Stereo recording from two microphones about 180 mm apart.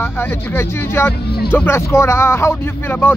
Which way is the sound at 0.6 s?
15° left (ahead or behind).